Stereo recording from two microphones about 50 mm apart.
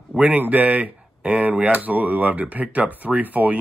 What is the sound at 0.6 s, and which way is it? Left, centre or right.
Speech, right.